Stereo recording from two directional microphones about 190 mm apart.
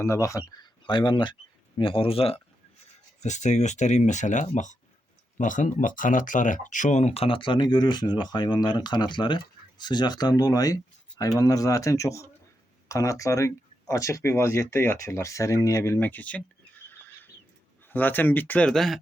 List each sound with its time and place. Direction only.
0.0 s speech: 15° left (ahead or behind)
17.9 s speech: 10° left (ahead or behind)